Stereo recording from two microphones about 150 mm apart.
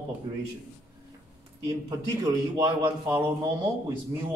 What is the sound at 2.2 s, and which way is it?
Speech, 20° right (ahead or behind).